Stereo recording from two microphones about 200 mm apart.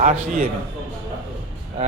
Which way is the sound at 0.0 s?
40° right (ahead or behind).